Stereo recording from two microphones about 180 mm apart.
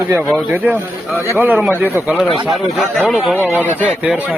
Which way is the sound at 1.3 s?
10° right (ahead or behind).